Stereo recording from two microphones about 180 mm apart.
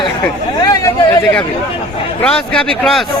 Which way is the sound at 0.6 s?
20° left (ahead or behind).